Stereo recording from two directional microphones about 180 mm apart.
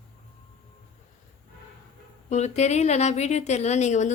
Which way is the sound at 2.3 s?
40° left (ahead or behind).